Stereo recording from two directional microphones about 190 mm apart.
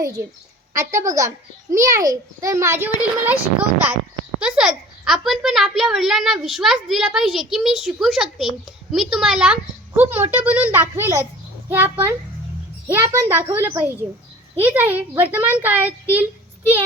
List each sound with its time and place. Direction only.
0.7 s a child's voice: 15° right (ahead or behind)